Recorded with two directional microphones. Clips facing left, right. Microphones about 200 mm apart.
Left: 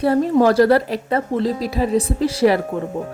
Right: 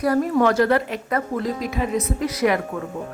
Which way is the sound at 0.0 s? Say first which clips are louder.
Left 3 dB; 30° left (ahead or behind).